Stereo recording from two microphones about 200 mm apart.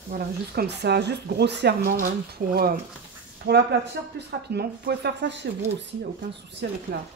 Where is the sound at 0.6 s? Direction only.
55° right (ahead or behind).